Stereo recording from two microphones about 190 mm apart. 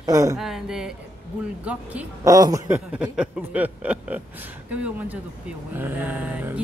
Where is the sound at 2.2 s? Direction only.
20° right (ahead or behind).